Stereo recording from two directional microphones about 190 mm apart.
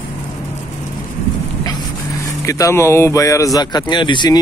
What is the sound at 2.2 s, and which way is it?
Speech, 15° left (ahead or behind).